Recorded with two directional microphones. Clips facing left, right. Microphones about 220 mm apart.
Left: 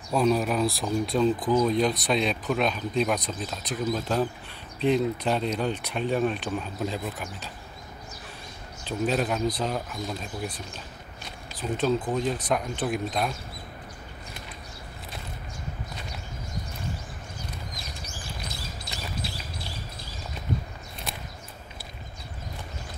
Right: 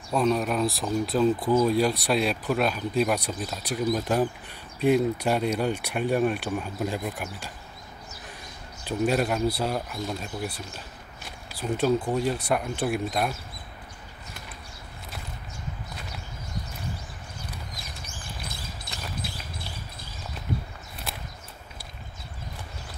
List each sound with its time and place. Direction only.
0.1 s speech: centre (ahead or behind)
8.8 s speech: 10° right (ahead or behind)
18.9 s a sound: 55° right (ahead or behind)